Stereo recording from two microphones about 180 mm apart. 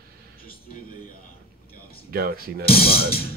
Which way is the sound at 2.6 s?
60° left (ahead or behind).